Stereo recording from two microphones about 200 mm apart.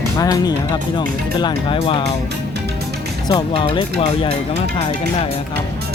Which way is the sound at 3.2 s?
20° left (ahead or behind).